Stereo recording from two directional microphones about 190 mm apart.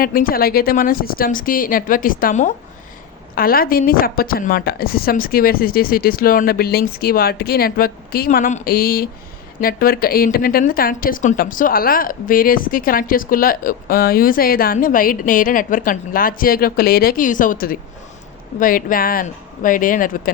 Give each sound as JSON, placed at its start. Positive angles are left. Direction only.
{"t": 0.0, "sound": "a woman's voice", "side_deg": 50}